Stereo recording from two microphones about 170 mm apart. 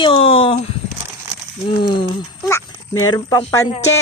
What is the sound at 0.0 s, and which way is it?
Speech, 35° left (ahead or behind).